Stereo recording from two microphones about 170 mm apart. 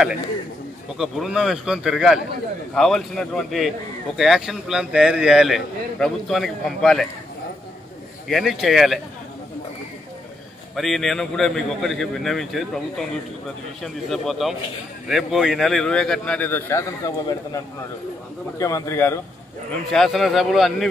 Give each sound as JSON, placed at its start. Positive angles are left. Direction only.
{"t": 0.9, "sound": "a man's voice", "side_deg": 0}
{"t": 8.3, "sound": "a man's voice", "side_deg": 0}
{"t": 10.8, "sound": "a man's voice", "side_deg": 0}
{"t": 19.9, "sound": "a man's voice", "side_deg": 0}